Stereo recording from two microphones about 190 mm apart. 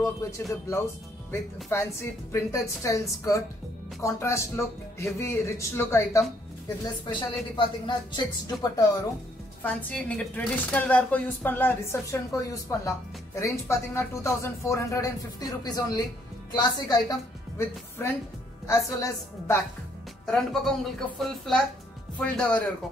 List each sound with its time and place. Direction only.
0.0 s speech: 15° left (ahead or behind)
7.1 s speech: 25° left (ahead or behind)
9.6 s a woman's voice: 10° left (ahead or behind)
20.2 s speech: 5° left (ahead or behind)